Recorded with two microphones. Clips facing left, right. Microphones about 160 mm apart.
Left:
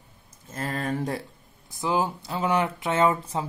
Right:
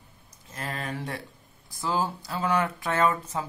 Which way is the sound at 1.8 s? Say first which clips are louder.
Left 3 dB; 20° left (ahead or behind).